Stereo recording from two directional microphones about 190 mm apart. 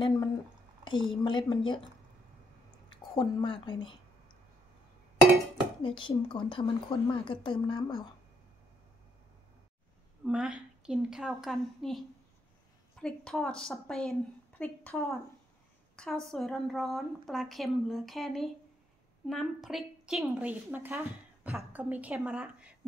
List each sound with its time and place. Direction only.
0.8 s a woman's voice: 25° left (ahead or behind)
2.9 s a sound: 25° left (ahead or behind)
5.8 s a woman's voice: 25° left (ahead or behind)
10.2 s a woman's voice: 5° right (ahead or behind)
13.0 s a woman's voice: 5° left (ahead or behind)